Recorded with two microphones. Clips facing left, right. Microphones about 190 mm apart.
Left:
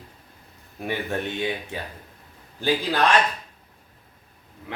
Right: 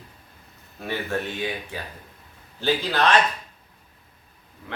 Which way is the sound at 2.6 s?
10° left (ahead or behind).